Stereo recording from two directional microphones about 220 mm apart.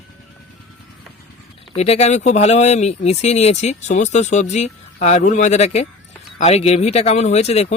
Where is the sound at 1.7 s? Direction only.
30° left (ahead or behind).